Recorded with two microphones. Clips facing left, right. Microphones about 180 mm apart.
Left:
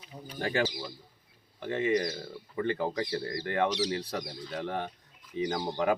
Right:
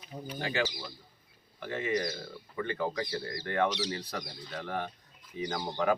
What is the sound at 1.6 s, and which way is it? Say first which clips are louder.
Speech: left 4 dB; 30° left (ahead or behind).